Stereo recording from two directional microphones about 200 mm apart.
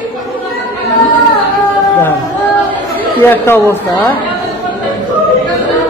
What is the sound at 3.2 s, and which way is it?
Speech, 10° left (ahead or behind).